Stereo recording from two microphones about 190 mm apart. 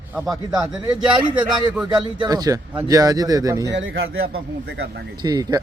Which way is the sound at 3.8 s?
90° right.